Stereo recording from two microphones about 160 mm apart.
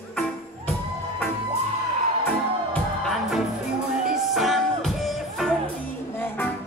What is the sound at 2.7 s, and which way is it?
Music, centre (ahead or behind).